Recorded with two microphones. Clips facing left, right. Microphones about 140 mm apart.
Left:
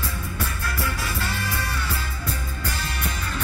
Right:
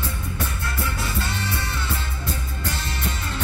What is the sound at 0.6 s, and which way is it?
Music, 25° right (ahead or behind).